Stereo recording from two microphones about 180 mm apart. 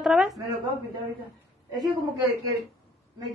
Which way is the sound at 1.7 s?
20° right (ahead or behind).